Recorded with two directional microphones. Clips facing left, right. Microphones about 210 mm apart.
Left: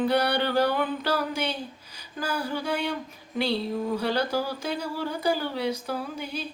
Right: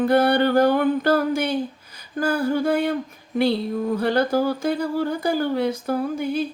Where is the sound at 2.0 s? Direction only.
50° right (ahead or behind).